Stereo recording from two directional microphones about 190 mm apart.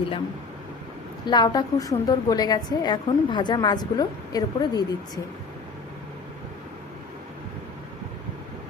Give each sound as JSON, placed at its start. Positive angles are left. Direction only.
{"t": 1.3, "sound": "a woman's voice", "side_deg": 20}